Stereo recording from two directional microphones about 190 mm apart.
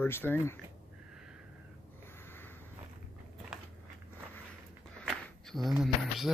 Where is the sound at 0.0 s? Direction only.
10° left (ahead or behind).